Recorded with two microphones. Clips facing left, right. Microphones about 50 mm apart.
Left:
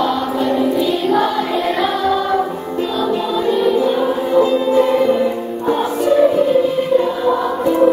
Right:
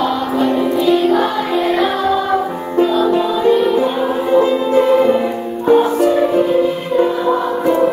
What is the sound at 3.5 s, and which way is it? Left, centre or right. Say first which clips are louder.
Music: even; centre.